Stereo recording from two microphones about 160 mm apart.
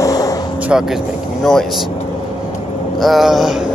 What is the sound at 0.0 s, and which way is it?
Vehicle, 20° left (ahead or behind).